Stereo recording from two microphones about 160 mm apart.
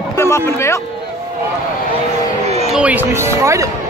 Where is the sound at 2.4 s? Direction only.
40° right (ahead or behind).